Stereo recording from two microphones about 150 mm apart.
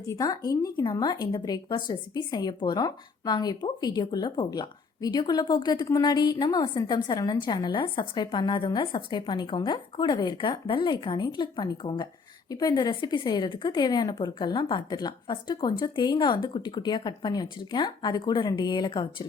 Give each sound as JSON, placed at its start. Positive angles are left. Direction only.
{"t": 0.0, "sound": "a woman's voice", "side_deg": 25}